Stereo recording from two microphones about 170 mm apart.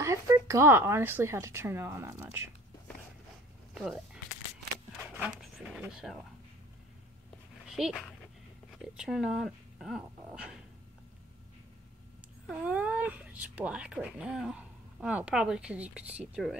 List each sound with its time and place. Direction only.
0.0 s speech: 15° right (ahead or behind)
3.7 s speech: centre (ahead or behind)
5.2 s a sound: centre (ahead or behind)
7.6 s dog: centre (ahead or behind)
8.9 s speech: 5° right (ahead or behind)
12.4 s speech: 5° right (ahead or behind)